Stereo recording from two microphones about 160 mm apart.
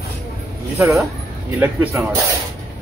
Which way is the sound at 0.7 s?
5° right (ahead or behind).